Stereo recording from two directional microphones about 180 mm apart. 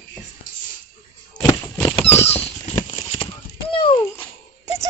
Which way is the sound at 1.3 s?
45° left (ahead or behind).